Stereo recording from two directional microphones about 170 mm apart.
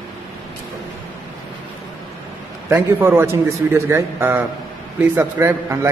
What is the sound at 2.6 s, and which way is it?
A man's voice, 15° right (ahead or behind).